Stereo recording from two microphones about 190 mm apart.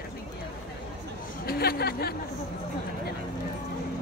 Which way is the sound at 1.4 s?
55° left (ahead or behind).